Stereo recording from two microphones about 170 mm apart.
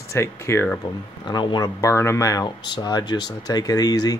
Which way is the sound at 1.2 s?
25° left (ahead or behind).